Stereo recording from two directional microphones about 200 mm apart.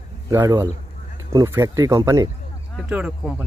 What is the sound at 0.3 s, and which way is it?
Speech, 15° right (ahead or behind).